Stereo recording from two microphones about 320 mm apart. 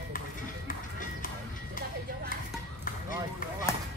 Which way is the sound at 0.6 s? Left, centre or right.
Left.